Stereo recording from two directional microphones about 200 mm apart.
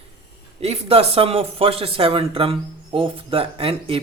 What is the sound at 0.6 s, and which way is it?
Speech, 30° right (ahead or behind).